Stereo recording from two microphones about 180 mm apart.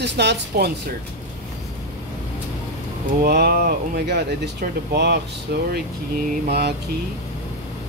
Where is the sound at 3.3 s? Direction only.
60° right (ahead or behind).